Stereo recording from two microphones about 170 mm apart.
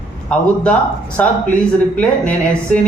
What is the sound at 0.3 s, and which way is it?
A woman's voice, 5° left (ahead or behind).